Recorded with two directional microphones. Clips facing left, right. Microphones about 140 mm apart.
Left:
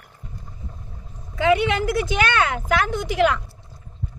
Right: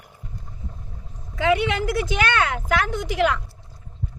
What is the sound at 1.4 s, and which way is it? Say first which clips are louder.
A woman's voice: left 2 dB; 45° left (ahead or behind).